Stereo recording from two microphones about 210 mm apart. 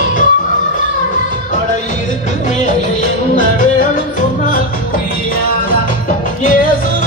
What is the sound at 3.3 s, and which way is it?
Music, 40° left (ahead or behind).